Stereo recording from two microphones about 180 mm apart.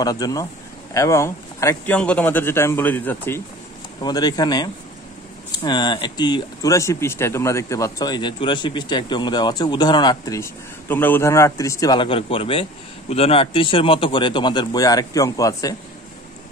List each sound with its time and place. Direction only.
0.0 s speech: 20° left (ahead or behind)
4.0 s speech: 20° left (ahead or behind)